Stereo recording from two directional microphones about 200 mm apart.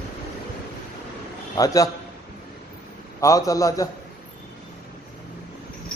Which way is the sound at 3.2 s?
15° left (ahead or behind).